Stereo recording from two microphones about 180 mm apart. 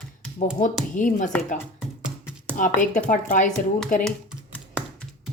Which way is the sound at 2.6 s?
45° left (ahead or behind).